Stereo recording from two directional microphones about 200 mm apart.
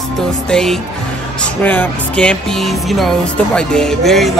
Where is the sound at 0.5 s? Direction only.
5° left (ahead or behind).